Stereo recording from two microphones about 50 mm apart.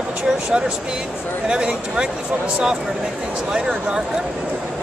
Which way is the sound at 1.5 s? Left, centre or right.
Centre.